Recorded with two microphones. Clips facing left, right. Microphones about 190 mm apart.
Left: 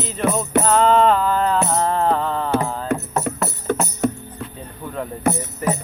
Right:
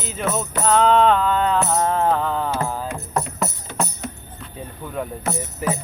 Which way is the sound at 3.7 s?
55° left (ahead or behind).